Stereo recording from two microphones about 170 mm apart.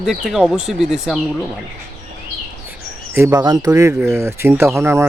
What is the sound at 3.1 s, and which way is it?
Speech, 15° right (ahead or behind).